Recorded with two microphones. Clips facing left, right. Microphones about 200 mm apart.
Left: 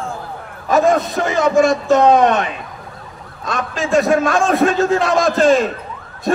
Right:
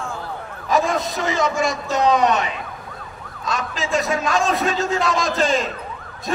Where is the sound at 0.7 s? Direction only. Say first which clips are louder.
Left 6 dB; 55° left (ahead or behind).